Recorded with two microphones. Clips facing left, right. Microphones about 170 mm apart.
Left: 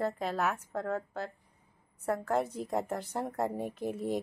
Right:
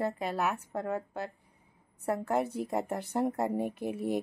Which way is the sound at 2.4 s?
60° right (ahead or behind).